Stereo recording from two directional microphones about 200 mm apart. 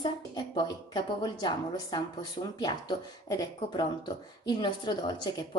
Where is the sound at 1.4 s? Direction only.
20° left (ahead or behind).